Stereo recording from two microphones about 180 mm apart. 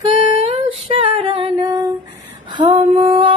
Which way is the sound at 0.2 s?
30° right (ahead or behind).